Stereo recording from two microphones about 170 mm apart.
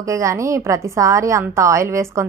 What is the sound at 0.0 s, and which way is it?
A woman's voice, 20° right (ahead or behind).